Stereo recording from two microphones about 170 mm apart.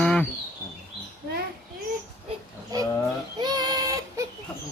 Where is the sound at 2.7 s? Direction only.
20° right (ahead or behind).